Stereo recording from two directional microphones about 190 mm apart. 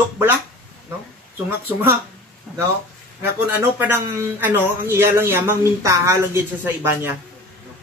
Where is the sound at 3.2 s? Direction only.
10° right (ahead or behind).